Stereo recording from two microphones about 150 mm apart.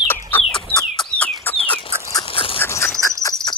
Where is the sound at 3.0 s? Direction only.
25° left (ahead or behind).